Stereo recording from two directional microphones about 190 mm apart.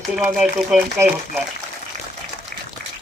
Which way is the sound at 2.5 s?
50° right (ahead or behind).